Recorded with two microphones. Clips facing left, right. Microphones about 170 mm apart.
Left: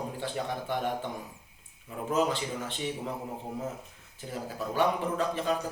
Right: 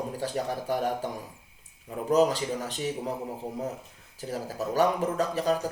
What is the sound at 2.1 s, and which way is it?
Speech, 40° right (ahead or behind).